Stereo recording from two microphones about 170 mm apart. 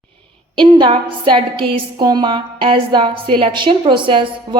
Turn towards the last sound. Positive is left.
turn(degrees=-30)  # may be behind; listen again after turning